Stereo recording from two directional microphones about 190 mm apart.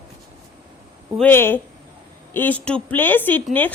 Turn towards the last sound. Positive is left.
turn(degrees=10)  # may be behind; listen again after turning